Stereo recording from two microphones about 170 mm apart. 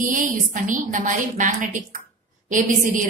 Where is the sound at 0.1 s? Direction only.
50° right (ahead or behind).